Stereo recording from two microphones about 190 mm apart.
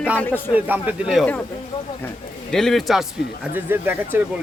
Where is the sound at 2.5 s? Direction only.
Centre (ahead or behind).